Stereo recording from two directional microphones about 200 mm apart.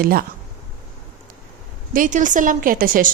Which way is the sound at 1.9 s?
40° right (ahead or behind).